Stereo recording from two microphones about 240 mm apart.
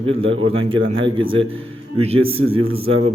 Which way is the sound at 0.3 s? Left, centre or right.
Right.